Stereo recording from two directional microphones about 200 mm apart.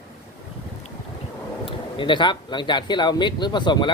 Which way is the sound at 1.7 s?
25° left (ahead or behind).